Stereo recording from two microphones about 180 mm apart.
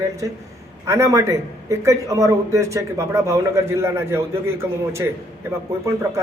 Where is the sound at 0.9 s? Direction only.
15° right (ahead or behind).